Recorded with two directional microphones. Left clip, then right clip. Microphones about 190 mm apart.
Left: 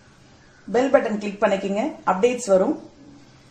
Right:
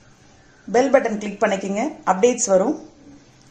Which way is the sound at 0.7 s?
15° right (ahead or behind).